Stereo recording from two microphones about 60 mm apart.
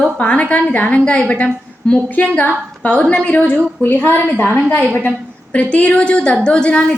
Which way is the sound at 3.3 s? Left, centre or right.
Left.